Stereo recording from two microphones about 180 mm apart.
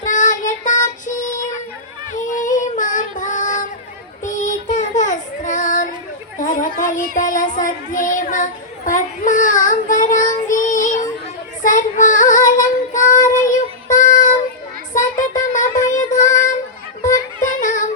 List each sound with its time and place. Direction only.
0.0 s child singing: 45° left (ahead or behind)
6.4 s chatter: 45° left (ahead or behind)
6.7 s child singing: 45° left (ahead or behind)
14.9 s music: 45° left (ahead or behind)
16.0 s child singing: 45° left (ahead or behind)
17.5 s music: 45° left (ahead or behind)